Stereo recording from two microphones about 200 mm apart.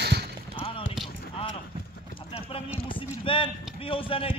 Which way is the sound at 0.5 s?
25° left (ahead or behind).